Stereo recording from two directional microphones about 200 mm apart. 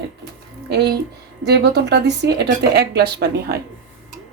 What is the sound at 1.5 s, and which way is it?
Speech, 60° right (ahead or behind).